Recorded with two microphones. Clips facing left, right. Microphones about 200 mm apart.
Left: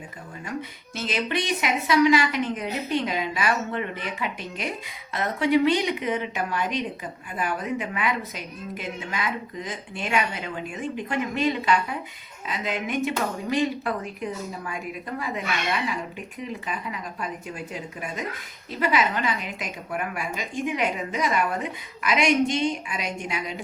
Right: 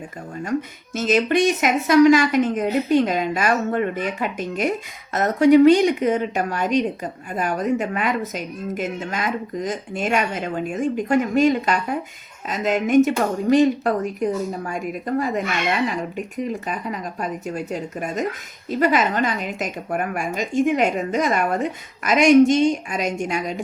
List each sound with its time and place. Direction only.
0.9 s speech: 45° right (ahead or behind)